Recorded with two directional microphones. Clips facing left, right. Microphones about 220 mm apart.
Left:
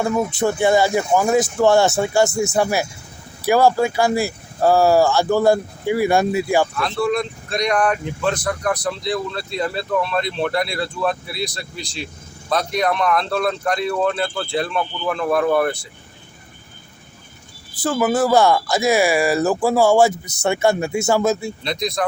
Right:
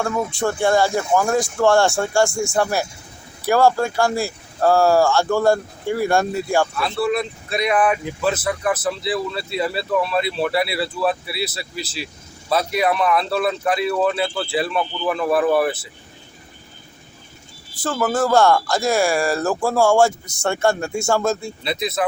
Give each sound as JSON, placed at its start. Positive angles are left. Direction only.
{"t": 0.0, "sound": "speech", "side_deg": 15}
{"t": 2.2, "sound": "speech", "side_deg": 20}
{"t": 3.4, "sound": "speech", "side_deg": 5}
{"t": 17.8, "sound": "speech", "side_deg": 10}